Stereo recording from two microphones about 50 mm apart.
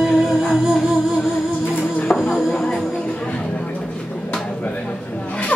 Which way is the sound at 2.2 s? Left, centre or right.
Centre.